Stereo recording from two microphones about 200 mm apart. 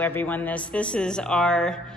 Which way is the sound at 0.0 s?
10° left (ahead or behind).